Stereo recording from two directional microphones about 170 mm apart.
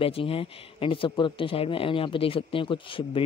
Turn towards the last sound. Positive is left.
turn(degrees=30)  # may be behind; listen again after turning